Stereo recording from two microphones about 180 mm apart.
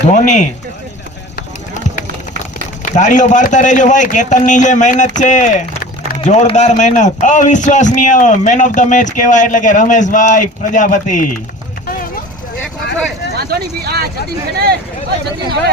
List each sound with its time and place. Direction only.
0.1 s speech: 40° left (ahead or behind)
2.8 s a man's voice: 45° left (ahead or behind)
13.3 s speech: 60° right (ahead or behind)